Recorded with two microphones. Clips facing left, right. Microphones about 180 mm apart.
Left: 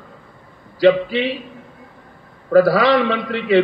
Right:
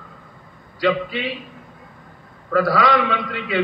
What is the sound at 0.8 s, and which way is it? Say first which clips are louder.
Speech: left 7 dB; 30° left (ahead or behind).